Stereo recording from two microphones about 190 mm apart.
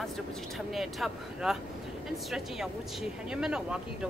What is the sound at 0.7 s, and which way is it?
Speech, centre (ahead or behind).